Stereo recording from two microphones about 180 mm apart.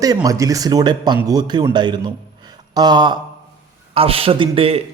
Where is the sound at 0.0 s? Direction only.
20° right (ahead or behind).